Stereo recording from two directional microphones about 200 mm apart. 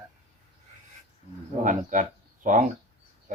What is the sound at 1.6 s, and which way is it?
Speech, 40° right (ahead or behind).